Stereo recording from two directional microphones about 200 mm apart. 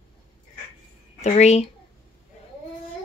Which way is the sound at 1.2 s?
35° left (ahead or behind).